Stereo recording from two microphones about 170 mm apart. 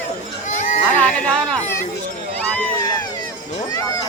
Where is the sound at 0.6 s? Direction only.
45° left (ahead or behind).